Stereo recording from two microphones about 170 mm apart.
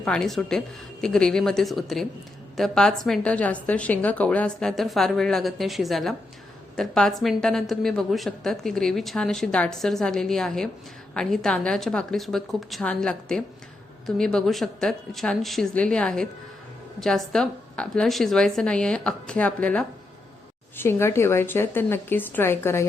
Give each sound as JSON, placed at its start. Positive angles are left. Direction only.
{"t": 0.0, "sound": "a woman's voice", "side_deg": 5}